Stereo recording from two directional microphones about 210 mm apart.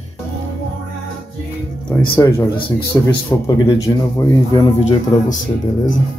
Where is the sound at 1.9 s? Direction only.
15° left (ahead or behind).